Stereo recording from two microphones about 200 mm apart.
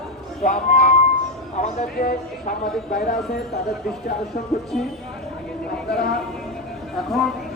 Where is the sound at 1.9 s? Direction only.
50° left (ahead or behind).